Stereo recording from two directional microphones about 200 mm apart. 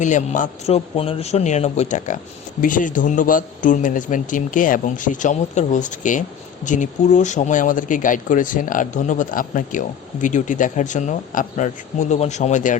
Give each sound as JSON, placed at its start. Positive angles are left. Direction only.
{"t": 0.0, "sound": "speech", "side_deg": 40}